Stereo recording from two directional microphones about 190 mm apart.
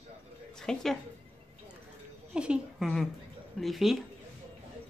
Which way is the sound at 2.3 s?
Centre (ahead or behind).